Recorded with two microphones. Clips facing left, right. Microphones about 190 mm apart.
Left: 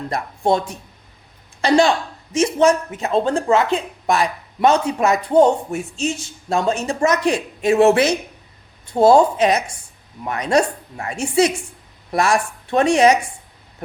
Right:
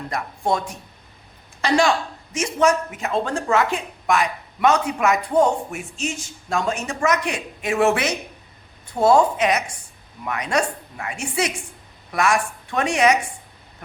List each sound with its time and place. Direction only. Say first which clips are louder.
0.1 s speech: left 4 dB; 30° left (ahead or behind)
1.6 s a woman's voice: left 4 dB; 30° left (ahead or behind)